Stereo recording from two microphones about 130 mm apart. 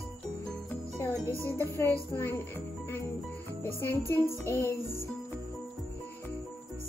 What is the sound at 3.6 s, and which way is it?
Music, 15° left (ahead or behind).